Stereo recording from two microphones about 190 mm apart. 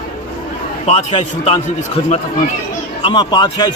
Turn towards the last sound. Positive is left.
turn(degrees=20)  # may be behind; listen again after turning